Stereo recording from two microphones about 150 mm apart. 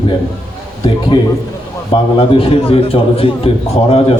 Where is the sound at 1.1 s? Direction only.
35° left (ahead or behind).